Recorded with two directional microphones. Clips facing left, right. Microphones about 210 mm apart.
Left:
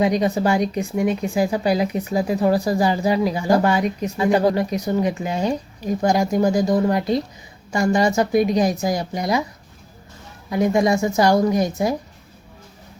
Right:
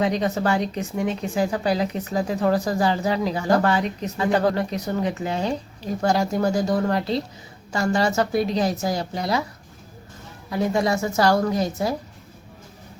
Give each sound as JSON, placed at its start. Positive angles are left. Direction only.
{"t": 0.0, "sound": "speech", "side_deg": 10}
{"t": 10.5, "sound": "speech", "side_deg": 15}